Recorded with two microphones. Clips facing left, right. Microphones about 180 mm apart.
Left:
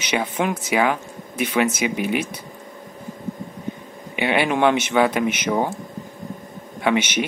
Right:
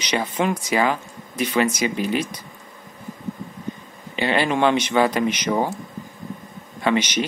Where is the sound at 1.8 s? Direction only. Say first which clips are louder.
Even; 65° left (ahead or behind).